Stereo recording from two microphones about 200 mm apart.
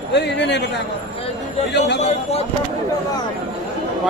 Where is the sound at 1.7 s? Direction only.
60° left (ahead or behind).